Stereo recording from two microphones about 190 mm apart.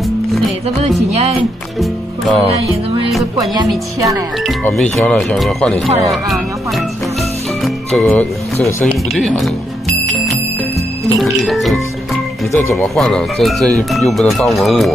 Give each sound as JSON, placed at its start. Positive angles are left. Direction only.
{"t": 1.8, "sound": "music", "side_deg": 0}
{"t": 3.3, "sound": "speech", "side_deg": -20}
{"t": 4.6, "sound": "speech", "side_deg": 5}
{"t": 9.1, "sound": "speech", "side_deg": 0}
{"t": 11.4, "sound": "speech", "side_deg": 0}
{"t": 12.5, "sound": "speech", "side_deg": 15}
{"t": 12.9, "sound": "speech", "side_deg": 0}